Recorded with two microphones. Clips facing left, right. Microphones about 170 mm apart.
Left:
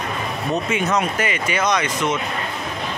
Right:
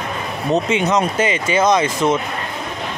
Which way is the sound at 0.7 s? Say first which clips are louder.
Right 3 dB; 20° right (ahead or behind).